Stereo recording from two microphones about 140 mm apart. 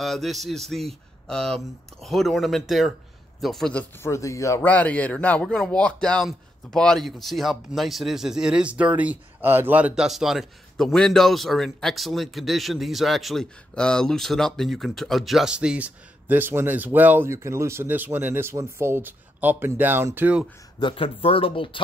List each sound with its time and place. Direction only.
0.0 s a man's voice: centre (ahead or behind)
4.0 s a man's voice: 20° left (ahead or behind); by 20.4 s 10° right (ahead or behind)
20.8 s speech: 40° left (ahead or behind)